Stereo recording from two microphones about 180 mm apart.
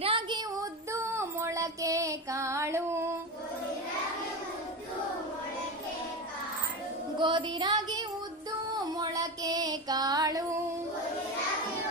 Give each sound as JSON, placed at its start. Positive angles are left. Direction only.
{"t": 0.0, "sound": "child singing", "side_deg": -25}
{"t": 7.2, "sound": "music", "side_deg": -25}